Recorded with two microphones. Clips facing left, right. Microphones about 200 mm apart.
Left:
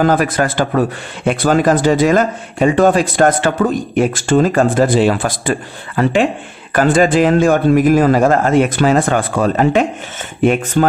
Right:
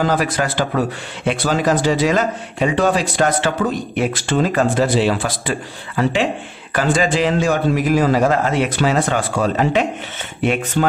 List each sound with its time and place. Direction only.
0.0 s a man's voice: 50° left (ahead or behind)